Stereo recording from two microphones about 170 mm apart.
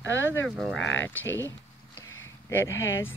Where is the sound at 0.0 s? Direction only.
90° left.